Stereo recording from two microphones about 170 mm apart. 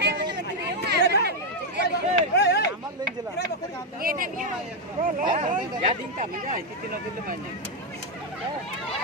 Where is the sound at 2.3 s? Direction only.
80° left.